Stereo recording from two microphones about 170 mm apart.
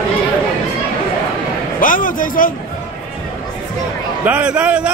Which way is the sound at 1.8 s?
55° left (ahead or behind).